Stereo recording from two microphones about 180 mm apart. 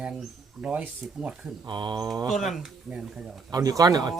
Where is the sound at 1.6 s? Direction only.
25° right (ahead or behind).